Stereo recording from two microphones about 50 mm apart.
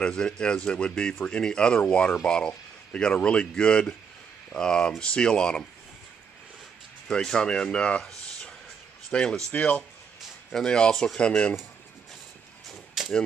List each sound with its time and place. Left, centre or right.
0.0 s speech: centre
7.1 s speech: centre; by 9.8 s left
10.5 s speech: centre
11.1 s speech: left
13.0 s a sound: centre